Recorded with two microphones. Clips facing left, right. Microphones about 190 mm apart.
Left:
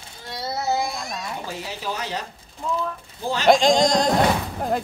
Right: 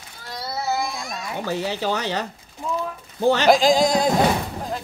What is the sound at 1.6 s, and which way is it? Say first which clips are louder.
Speech: right 6 dB; 70° right (ahead or behind).